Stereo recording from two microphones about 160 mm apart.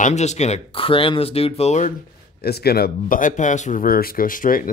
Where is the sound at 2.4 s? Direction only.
80° left.